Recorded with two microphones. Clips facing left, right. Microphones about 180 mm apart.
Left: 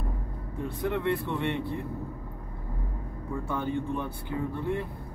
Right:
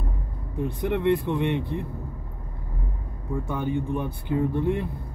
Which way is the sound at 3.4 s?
15° right (ahead or behind).